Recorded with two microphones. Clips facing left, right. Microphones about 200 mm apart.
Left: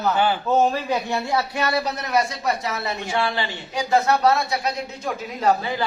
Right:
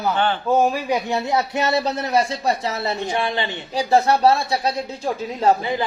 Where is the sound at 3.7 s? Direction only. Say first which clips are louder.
Right 3 dB; 30° right (ahead or behind).